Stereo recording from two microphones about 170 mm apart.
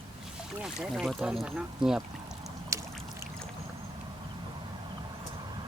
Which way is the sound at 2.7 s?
15° right (ahead or behind).